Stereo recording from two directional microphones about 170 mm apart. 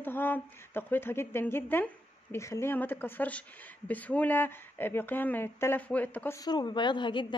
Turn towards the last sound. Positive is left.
turn(degrees=25)  # may be behind; listen again after turning